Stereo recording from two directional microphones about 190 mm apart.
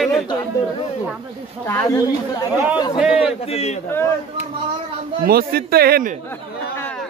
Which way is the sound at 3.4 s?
35° left (ahead or behind).